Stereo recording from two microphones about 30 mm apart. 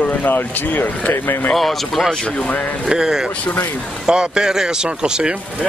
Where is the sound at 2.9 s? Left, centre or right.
Right.